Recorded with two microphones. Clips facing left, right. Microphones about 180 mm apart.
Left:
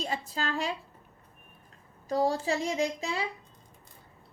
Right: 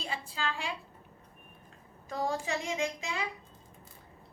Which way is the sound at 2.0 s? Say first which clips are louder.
Left 6 dB; 35° left (ahead or behind).